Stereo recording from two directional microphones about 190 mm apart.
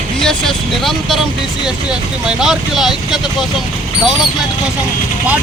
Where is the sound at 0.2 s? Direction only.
Centre (ahead or behind).